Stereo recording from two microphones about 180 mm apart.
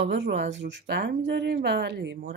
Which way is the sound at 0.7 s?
65° right (ahead or behind).